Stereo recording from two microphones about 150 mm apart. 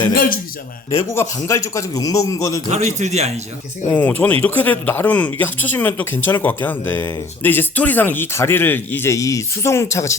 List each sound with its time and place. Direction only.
0.1 s a man's voice: 70° left (ahead or behind)
0.9 s a man's voice: 20° left (ahead or behind)
2.6 s a man's voice: 50° right (ahead or behind)
3.8 s speech: 10° left (ahead or behind)